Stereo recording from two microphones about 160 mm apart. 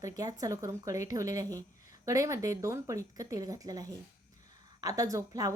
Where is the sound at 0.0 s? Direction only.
20° right (ahead or behind).